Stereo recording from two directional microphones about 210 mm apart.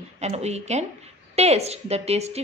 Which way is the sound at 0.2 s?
30° right (ahead or behind).